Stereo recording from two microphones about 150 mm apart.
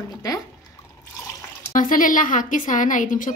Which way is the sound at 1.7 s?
65° left (ahead or behind).